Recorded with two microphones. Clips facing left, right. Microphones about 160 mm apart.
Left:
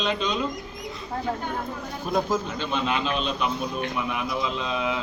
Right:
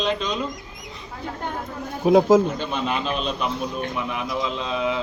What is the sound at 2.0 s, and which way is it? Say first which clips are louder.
Speech: right 10 dB; 80° right.